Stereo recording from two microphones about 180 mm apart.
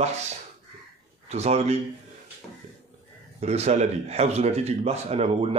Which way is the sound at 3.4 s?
35° right (ahead or behind).